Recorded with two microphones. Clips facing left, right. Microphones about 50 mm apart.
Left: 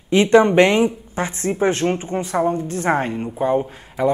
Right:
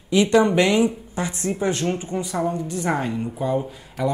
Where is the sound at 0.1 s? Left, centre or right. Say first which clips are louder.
Left 4 dB; left.